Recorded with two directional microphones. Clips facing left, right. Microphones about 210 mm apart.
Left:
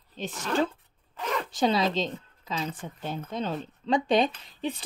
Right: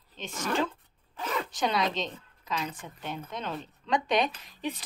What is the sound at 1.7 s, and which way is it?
Speech, 30° left (ahead or behind).